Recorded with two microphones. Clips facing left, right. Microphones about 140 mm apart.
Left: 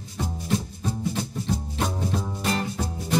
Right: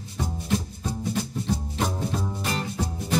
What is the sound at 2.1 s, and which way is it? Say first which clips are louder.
Music: left 1 dB; centre (ahead or behind).